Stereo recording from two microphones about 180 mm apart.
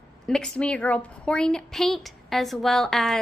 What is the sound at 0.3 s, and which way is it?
A woman's voice, 5° left (ahead or behind).